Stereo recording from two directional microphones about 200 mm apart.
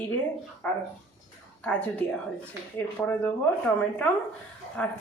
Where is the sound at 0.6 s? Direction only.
10° left (ahead or behind).